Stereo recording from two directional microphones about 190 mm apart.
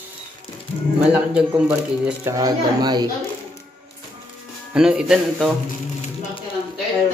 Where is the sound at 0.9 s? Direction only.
10° right (ahead or behind).